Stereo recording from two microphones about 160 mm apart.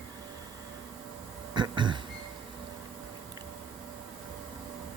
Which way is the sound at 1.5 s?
30° right (ahead or behind).